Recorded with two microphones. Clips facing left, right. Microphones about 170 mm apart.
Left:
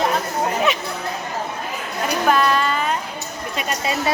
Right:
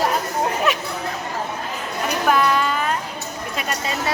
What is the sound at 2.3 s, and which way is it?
Speech, 5° right (ahead or behind).